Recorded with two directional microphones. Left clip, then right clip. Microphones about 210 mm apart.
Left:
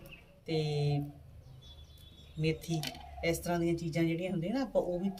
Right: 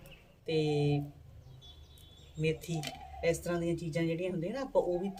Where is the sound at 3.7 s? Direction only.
15° right (ahead or behind).